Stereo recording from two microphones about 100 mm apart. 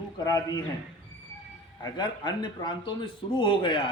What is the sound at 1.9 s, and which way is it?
A man's voice, 50° left (ahead or behind).